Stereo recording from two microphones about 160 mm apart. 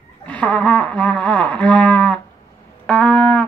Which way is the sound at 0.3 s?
10° left (ahead or behind).